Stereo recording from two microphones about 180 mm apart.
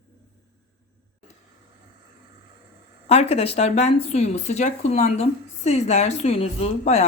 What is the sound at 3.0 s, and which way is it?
Speech, 35° left (ahead or behind).